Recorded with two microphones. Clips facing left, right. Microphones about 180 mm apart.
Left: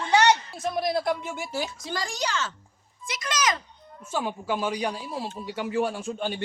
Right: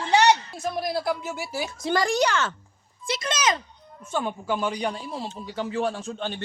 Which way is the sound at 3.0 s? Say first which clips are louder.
Right 2 dB; 30° right (ahead or behind).